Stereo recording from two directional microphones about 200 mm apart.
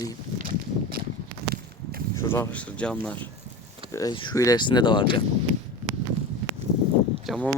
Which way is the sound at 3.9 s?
15° left (ahead or behind).